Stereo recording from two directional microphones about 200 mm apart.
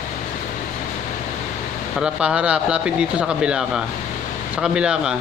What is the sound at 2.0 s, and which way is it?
Speech, 5° right (ahead or behind).